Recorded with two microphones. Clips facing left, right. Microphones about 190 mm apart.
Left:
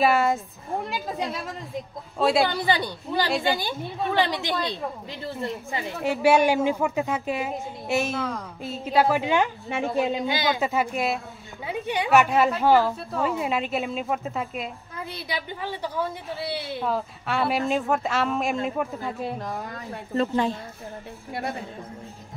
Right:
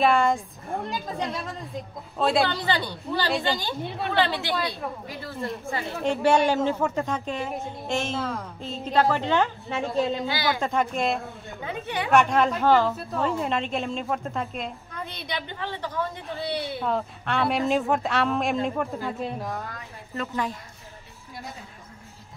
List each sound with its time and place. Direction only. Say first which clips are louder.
0.0 s a woman's voice: even; 5° left (ahead or behind)
2.4 s speech: left 2 dB; 10° left (ahead or behind)
10.6 s a woman's voice: even; 5° left (ahead or behind)
20.2 s a woman's voice: left 6 dB; 30° left (ahead or behind)
21.3 s a woman's voice: left 9 dB; 65° left (ahead or behind)